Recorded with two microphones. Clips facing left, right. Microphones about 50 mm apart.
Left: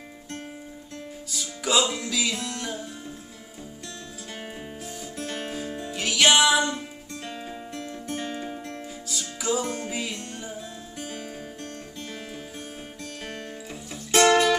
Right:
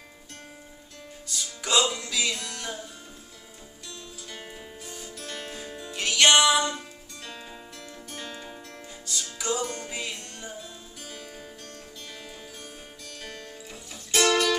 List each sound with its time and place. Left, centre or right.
1.3 s music: centre
2.3 s music: centre
5.1 s music: left
5.5 s music: centre
7.2 s music: left
9.4 s music: centre
14.1 s music: left